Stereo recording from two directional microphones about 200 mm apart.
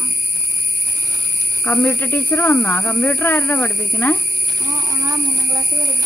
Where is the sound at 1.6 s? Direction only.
10° left (ahead or behind).